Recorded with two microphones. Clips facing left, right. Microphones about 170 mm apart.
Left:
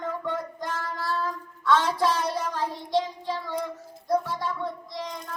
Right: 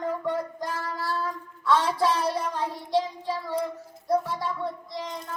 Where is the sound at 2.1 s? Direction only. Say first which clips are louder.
Right 1 dB; 30° right (ahead or behind).